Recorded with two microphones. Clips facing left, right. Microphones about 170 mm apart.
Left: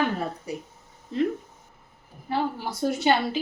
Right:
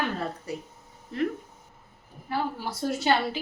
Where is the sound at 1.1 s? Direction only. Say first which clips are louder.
Left 3 dB; 20° left (ahead or behind).